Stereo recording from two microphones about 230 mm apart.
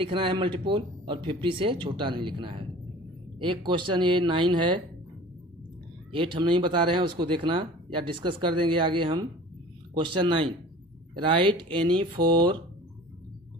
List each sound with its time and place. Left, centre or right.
0.0 s speech: right
6.1 s speech: right